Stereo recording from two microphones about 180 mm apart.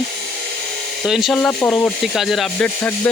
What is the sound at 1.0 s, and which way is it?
Speech, centre (ahead or behind).